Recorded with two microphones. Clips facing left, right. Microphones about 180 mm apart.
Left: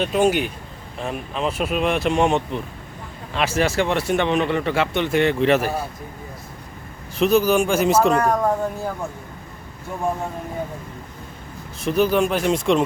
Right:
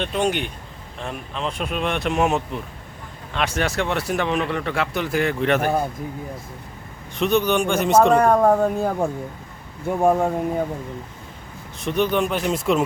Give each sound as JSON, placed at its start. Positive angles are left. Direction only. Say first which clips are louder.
{"t": 0.0, "sound": "speech", "louder": "left 4 dB", "side_deg": 5}
{"t": 7.2, "sound": "speech", "louder": "left 3 dB", "side_deg": 0}
{"t": 8.2, "sound": "speech", "louder": "right 4 dB", "side_deg": -55}
{"t": 11.8, "sound": "speech", "louder": "left 2 dB", "side_deg": 0}